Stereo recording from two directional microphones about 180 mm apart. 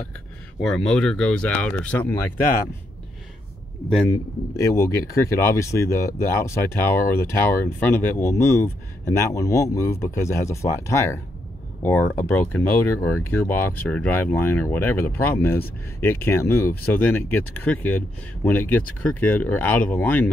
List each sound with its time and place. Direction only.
0.6 s speech: 5° left (ahead or behind)
4.1 s speech: 15° left (ahead or behind)